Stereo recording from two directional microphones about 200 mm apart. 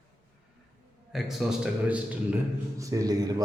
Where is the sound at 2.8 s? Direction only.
15° right (ahead or behind).